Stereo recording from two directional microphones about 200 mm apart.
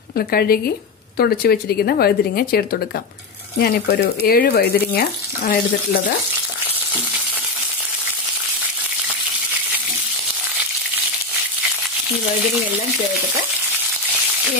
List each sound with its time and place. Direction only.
0.3 s a woman's voice: 50° left (ahead or behind)